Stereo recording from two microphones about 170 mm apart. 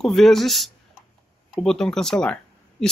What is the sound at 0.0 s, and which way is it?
Speech, centre (ahead or behind).